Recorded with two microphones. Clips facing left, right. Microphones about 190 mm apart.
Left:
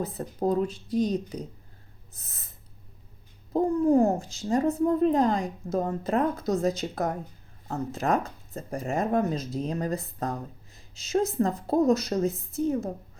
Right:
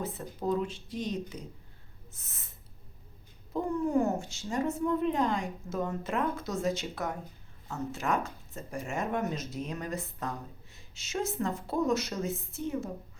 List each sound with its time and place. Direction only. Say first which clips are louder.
0.0 s speech: left 6 dB; 40° left (ahead or behind)
2.1 s snort: left 5 dB; 35° left (ahead or behind)
3.5 s speech: left 7 dB; 35° left (ahead or behind)